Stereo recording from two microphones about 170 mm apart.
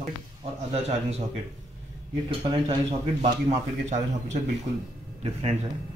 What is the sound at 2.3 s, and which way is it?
A man's voice, 30° right (ahead or behind).